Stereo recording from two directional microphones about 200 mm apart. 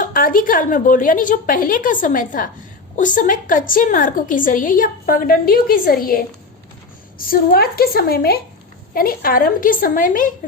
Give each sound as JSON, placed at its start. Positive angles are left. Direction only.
{"t": 0.0, "sound": "a woman's voice", "side_deg": 45}